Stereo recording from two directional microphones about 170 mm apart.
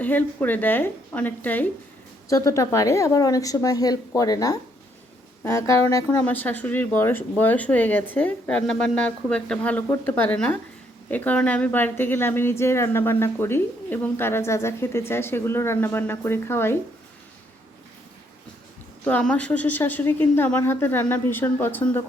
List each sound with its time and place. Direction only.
0.0 s a woman's voice: 10° left (ahead or behind)
19.0 s a woman's voice: 5° left (ahead or behind)